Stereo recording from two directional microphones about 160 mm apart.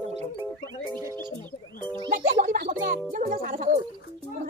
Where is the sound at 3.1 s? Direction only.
60° right (ahead or behind).